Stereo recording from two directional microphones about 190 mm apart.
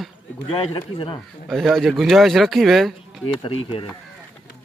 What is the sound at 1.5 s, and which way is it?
Speech, centre (ahead or behind).